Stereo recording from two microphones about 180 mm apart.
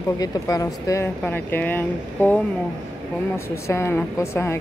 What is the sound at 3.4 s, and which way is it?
Speech, 15° left (ahead or behind).